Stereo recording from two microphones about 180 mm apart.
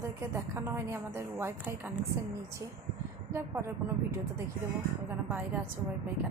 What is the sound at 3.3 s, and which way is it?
Speech, 15° right (ahead or behind).